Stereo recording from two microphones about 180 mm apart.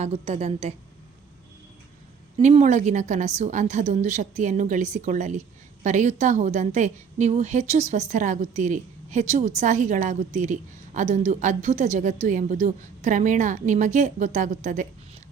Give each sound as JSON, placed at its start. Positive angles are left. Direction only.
{"t": 0.0, "sound": "a woman's voice", "side_deg": -35}
{"t": 2.4, "sound": "a woman's voice", "side_deg": -40}